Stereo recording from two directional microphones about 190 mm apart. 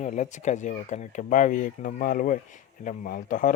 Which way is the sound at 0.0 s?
40° left (ahead or behind).